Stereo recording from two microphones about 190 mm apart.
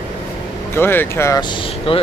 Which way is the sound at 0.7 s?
10° left (ahead or behind).